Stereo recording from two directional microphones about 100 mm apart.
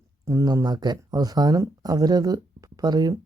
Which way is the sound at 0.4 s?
40° right (ahead or behind).